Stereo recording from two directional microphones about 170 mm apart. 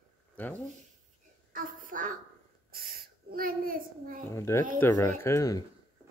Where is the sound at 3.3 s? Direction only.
60° right (ahead or behind).